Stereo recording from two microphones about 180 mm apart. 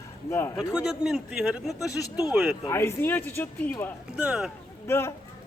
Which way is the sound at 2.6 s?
15° left (ahead or behind).